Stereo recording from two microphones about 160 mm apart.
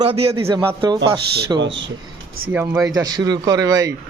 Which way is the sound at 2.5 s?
15° right (ahead or behind).